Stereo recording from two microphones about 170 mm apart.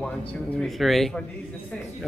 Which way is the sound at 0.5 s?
Centre (ahead or behind).